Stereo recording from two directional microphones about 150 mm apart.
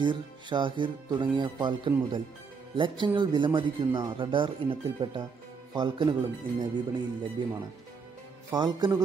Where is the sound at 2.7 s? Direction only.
30° right (ahead or behind).